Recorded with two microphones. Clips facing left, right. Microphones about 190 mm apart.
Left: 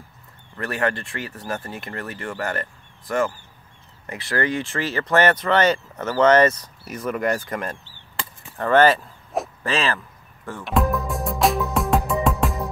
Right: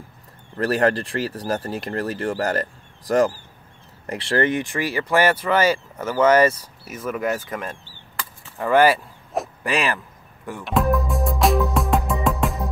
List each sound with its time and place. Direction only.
0.6 s speech: 35° right (ahead or behind); by 9.9 s 15° right (ahead or behind)
10.6 s music: centre (ahead or behind)